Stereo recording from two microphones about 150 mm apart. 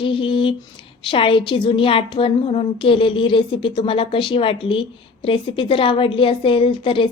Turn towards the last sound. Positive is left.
turn(degrees=35)  # may be behind; listen again after turning